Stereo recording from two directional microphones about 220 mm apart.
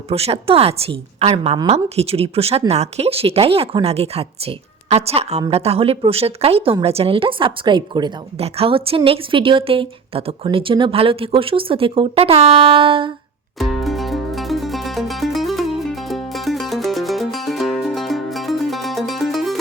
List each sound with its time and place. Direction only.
0.1 s a woman's voice: 25° right (ahead or behind)
13.6 s music: centre (ahead or behind)